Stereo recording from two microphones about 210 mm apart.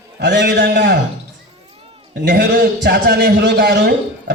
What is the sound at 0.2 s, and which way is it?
Speech, 55° right (ahead or behind).